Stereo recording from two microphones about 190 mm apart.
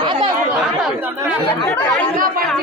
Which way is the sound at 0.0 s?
25° right (ahead or behind).